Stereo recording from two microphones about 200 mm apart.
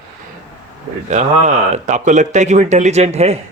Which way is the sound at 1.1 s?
35° right (ahead or behind).